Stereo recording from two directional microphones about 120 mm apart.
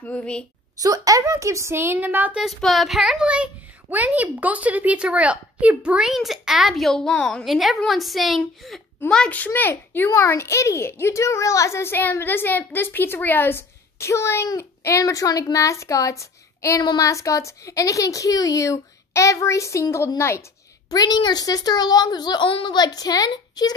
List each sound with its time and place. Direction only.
0.0 s a woman's voice: 10° left (ahead or behind)
0.7 s a woman's voice: 30° right (ahead or behind)
2.4 s a child's voice: centre (ahead or behind); by 20.4 s 20° left (ahead or behind)
20.9 s a woman's voice: 35° left (ahead or behind)